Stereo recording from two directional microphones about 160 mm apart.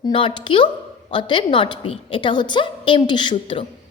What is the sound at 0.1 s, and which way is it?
A woman's voice, 30° left (ahead or behind).